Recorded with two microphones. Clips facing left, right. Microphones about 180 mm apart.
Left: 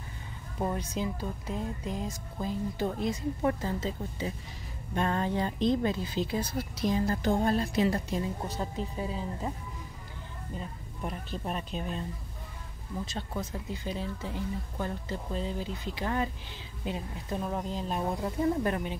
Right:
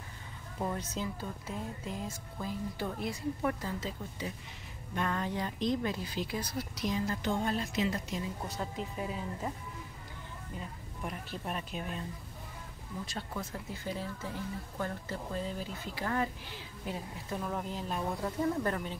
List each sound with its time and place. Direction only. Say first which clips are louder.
0.6 s speech: left 4 dB; 15° left (ahead or behind); by 9.2 s 30° left (ahead or behind)
11.4 s speech: left 3 dB; 30° left (ahead or behind)
13.0 s speech: left 3 dB; 20° left (ahead or behind)